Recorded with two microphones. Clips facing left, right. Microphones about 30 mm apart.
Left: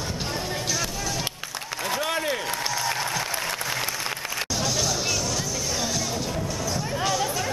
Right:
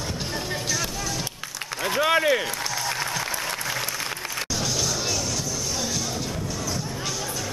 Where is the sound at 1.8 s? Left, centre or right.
Centre.